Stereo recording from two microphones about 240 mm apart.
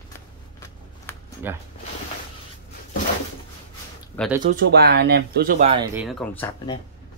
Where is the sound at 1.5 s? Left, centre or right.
Centre.